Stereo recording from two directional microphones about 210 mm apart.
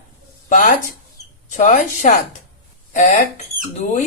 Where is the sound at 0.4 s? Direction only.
40° left (ahead or behind).